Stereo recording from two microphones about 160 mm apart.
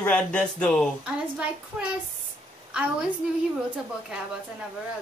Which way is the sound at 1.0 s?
5° right (ahead or behind).